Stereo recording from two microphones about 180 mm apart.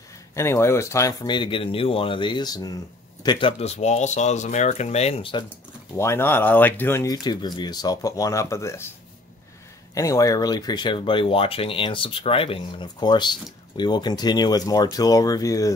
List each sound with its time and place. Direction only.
0.4 s speech: 15° left (ahead or behind); by 5.4 s 30° left (ahead or behind)
5.9 s speech: 15° left (ahead or behind)
9.9 s speech: 20° left (ahead or behind)